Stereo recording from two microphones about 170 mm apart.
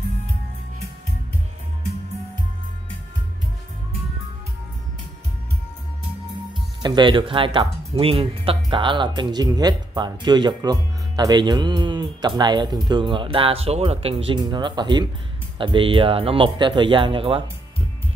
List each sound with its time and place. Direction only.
6.8 s speech: 25° right (ahead or behind)